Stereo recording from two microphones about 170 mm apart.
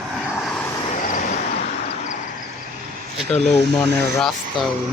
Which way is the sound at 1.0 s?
50° left (ahead or behind).